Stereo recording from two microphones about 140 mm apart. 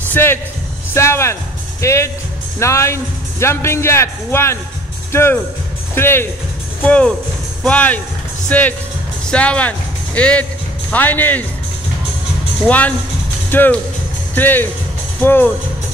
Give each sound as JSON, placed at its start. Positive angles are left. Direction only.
{"t": 0.1, "sound": "a man's voice", "side_deg": 15}
{"t": 12.6, "sound": "speech", "side_deg": 10}